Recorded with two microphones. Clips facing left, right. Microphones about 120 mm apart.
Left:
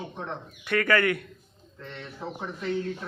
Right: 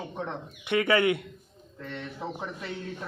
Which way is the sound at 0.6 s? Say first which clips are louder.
Even; 20° right (ahead or behind).